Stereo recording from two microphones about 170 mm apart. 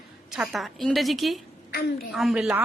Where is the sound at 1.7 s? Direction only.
60° left (ahead or behind).